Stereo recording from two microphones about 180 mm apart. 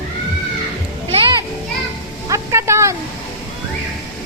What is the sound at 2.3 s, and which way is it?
Vehicle, 15° right (ahead or behind).